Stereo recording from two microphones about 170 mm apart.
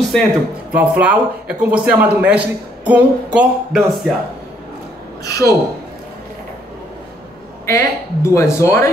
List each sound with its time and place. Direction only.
0.1 s speech: 5° left (ahead or behind)
0.7 s speech: 10° right (ahead or behind)
5.2 s speech: 20° left (ahead or behind)
7.6 s speech: 15° left (ahead or behind)